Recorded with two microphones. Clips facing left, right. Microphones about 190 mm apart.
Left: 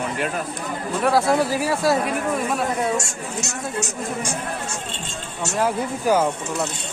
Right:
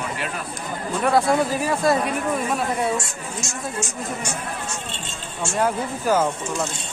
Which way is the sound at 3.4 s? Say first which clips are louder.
Left 2 dB; 65° left (ahead or behind).